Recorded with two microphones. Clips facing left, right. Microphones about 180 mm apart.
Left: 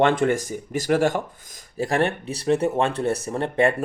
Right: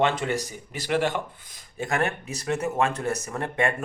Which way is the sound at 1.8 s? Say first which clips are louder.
Left 4 dB; 35° left (ahead or behind).